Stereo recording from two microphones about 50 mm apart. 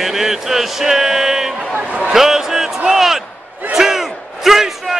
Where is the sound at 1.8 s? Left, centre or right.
Right.